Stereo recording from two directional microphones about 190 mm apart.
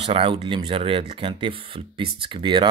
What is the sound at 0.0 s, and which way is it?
Speech, 30° right (ahead or behind).